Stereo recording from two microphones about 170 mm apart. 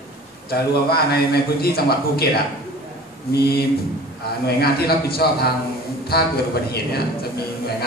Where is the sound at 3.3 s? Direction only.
65° left (ahead or behind).